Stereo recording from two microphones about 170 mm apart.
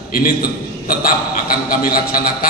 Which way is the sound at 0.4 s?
60° left (ahead or behind).